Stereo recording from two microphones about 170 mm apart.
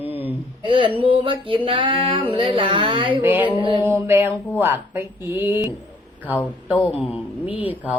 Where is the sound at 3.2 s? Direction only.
10° right (ahead or behind).